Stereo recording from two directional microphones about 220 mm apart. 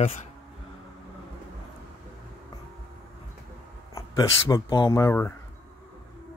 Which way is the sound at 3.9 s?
15° left (ahead or behind).